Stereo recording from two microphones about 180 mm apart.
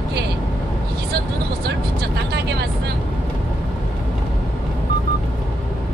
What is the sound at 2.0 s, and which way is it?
Vehicle, 70° right (ahead or behind).